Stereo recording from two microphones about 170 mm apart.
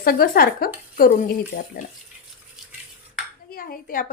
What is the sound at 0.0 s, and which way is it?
Speech, 60° left (ahead or behind).